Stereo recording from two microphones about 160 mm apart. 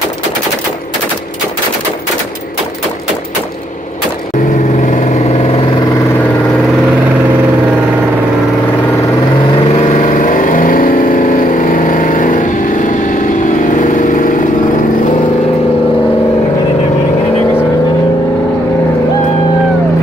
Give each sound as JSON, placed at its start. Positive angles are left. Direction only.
{"t": 4.8, "sound": "vehicle", "side_deg": 50}
{"t": 9.7, "sound": "vehicle", "side_deg": 45}